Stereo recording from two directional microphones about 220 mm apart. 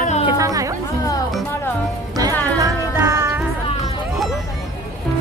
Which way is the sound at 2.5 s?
15° right (ahead or behind).